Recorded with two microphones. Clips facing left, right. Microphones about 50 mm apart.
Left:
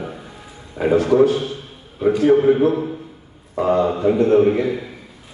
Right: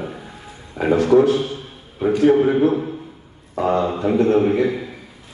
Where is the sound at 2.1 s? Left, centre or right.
Centre.